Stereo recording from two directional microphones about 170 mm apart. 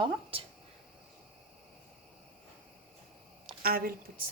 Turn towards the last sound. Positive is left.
turn(degrees=-60)  # may be behind; listen again after turning